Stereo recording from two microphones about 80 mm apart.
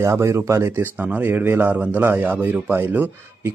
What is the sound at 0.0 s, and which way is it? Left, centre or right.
A man's voice, right.